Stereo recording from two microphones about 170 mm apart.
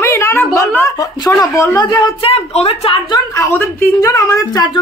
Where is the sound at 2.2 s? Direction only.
35° left (ahead or behind).